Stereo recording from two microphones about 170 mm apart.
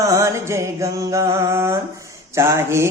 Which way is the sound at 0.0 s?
20° right (ahead or behind).